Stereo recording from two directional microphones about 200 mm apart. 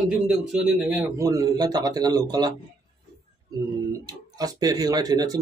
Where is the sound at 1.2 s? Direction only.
15° right (ahead or behind).